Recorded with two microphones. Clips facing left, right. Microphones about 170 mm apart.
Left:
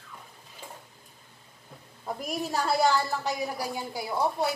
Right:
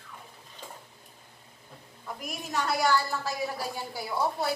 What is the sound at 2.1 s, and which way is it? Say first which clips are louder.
A woman's voice: left 6 dB; 35° left (ahead or behind).